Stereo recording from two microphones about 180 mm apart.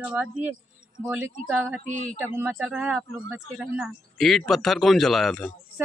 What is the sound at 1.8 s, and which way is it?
Speech, 45° right (ahead or behind).